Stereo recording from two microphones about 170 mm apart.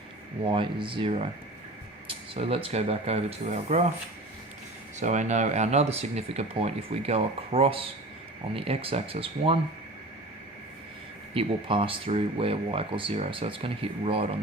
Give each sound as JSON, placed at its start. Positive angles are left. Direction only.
{"t": 0.4, "sound": "speech", "side_deg": -30}
{"t": 4.9, "sound": "speech", "side_deg": -45}
{"t": 11.3, "sound": "speech", "side_deg": -30}